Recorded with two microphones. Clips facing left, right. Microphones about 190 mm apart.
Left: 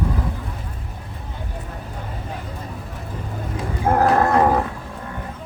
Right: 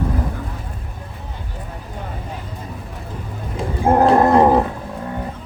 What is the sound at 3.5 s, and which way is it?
Dog, 25° right (ahead or behind).